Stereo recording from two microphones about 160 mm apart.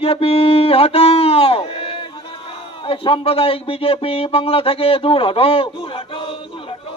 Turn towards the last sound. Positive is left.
turn(degrees=35)  # may be behind; listen again after turning